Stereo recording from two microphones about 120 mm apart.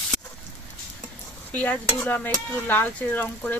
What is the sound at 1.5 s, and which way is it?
Speech, 15° left (ahead or behind).